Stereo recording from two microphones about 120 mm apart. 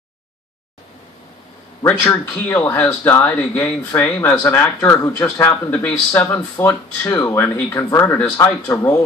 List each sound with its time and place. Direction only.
1.9 s speech: 15° left (ahead or behind)
6.2 s speech: 25° left (ahead or behind)